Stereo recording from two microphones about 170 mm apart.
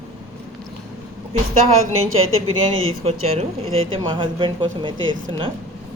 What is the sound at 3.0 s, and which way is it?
A woman's voice, 40° right (ahead or behind).